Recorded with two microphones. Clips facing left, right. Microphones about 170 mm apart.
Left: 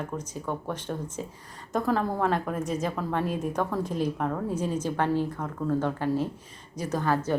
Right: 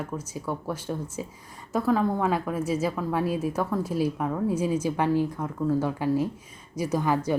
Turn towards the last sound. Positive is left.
turn(degrees=-15)  # may be behind; listen again after turning